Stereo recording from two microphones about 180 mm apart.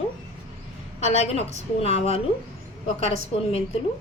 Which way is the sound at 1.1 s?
35° left (ahead or behind).